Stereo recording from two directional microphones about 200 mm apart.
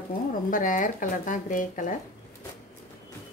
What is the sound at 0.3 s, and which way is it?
Speech, 40° left (ahead or behind).